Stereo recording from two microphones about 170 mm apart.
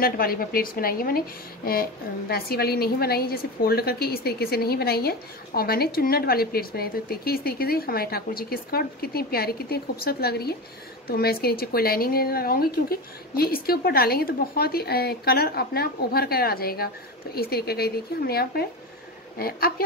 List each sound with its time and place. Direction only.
0.0 s a woman's voice: 60° left (ahead or behind)